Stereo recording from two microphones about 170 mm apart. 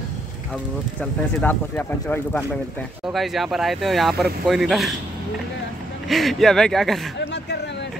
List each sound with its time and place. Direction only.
1.4 s speech: 10° left (ahead or behind)
3.1 s speech: centre (ahead or behind)
6.0 s speech: centre (ahead or behind)
7.2 s a sound: 75° left (ahead or behind)